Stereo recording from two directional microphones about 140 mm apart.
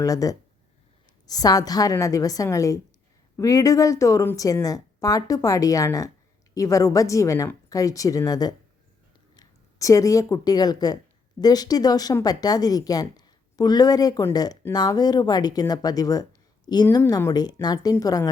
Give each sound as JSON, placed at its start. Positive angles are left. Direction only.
{"t": 0.0, "sound": "speech", "side_deg": 25}